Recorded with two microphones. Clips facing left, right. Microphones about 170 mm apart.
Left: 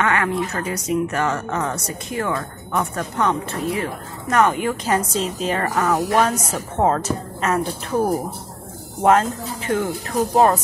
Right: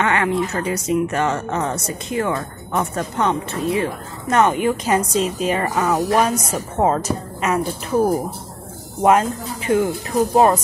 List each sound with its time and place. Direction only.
0.0 s speech: 25° right (ahead or behind)
9.0 s speech: 10° right (ahead or behind)